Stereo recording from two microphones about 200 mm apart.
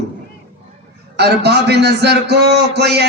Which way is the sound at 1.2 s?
55° right (ahead or behind).